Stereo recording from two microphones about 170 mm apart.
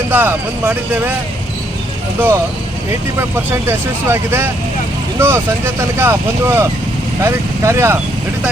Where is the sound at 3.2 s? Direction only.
15° right (ahead or behind).